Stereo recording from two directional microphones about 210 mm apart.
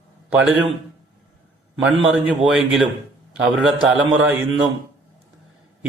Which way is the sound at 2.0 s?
Centre (ahead or behind).